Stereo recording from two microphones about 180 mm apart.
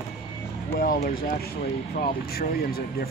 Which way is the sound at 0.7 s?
55° left (ahead or behind).